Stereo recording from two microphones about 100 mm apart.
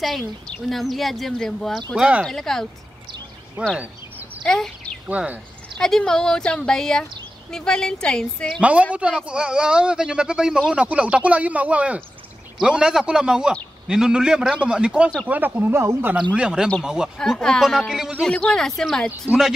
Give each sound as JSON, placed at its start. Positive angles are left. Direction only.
{"t": 0.5, "sound": "speech", "side_deg": 0}
{"t": 2.0, "sound": "speech", "side_deg": -10}
{"t": 2.2, "sound": "speech", "side_deg": 5}
{"t": 3.7, "sound": "a sound", "side_deg": -15}
{"t": 4.4, "sound": "a sound", "side_deg": 5}
{"t": 5.0, "sound": "speech", "side_deg": -15}
{"t": 5.8, "sound": "speech", "side_deg": 5}
{"t": 8.5, "sound": "speech", "side_deg": -10}
{"t": 16.3, "sound": "speech", "side_deg": -10}
{"t": 17.2, "sound": "speech", "side_deg": 5}
{"t": 18.3, "sound": "speech", "side_deg": 10}